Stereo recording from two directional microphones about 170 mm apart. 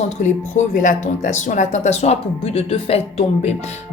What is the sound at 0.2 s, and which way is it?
Speech, 45° left (ahead or behind).